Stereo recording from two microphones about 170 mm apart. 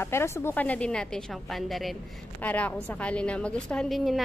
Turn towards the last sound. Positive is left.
turn(degrees=0)  # may be behind; listen again after turning